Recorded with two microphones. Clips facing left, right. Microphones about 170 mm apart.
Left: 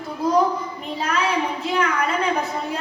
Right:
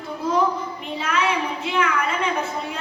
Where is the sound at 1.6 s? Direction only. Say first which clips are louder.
Left 1 dB; 40° left (ahead or behind).